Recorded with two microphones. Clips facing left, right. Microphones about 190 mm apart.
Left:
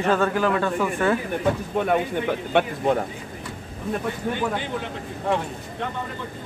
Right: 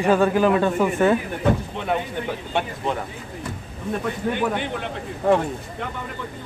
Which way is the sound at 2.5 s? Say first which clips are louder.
Left 5 dB; 50° left (ahead or behind).